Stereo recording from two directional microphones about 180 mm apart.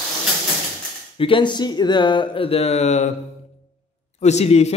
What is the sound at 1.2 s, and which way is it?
A man's voice, 30° left (ahead or behind).